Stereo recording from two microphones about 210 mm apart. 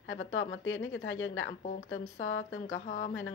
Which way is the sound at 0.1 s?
70° left (ahead or behind).